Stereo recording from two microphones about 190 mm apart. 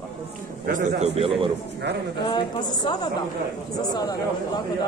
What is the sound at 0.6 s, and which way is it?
Speech, 40° right (ahead or behind).